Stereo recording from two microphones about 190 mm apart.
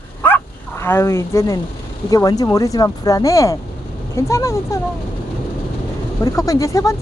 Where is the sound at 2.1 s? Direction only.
20° left (ahead or behind).